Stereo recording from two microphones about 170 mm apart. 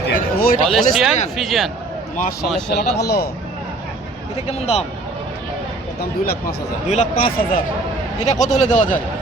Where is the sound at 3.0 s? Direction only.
70° left (ahead or behind).